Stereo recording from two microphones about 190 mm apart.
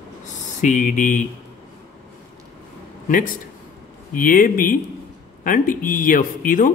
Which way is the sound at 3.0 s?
45° left (ahead or behind).